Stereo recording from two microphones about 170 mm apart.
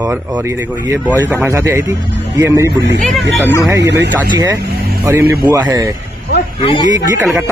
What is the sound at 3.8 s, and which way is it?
Speech, 80° right.